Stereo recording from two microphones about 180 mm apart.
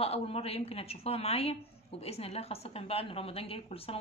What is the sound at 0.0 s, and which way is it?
A woman's voice, 35° left (ahead or behind).